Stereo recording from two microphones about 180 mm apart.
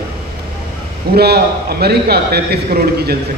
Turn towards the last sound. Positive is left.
turn(degrees=-55)  # may be behind; listen again after turning